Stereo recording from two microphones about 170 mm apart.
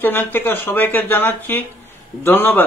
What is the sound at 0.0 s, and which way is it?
A man's voice, 10° left (ahead or behind).